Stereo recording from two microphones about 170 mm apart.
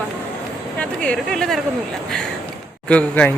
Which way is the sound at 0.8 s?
5° left (ahead or behind).